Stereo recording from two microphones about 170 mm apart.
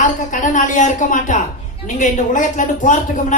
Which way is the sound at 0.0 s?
50° left (ahead or behind).